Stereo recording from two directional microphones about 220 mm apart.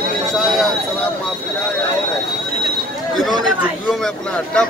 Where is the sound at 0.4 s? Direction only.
Centre (ahead or behind).